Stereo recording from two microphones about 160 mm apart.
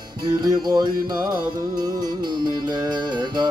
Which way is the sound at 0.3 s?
25° right (ahead or behind).